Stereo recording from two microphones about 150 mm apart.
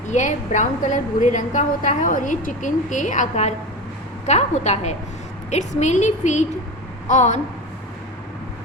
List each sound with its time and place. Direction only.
0.1 s a woman's voice: 55° left (ahead or behind)